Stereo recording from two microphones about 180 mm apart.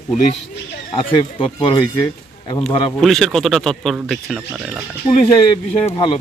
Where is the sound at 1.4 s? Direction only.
30° left (ahead or behind).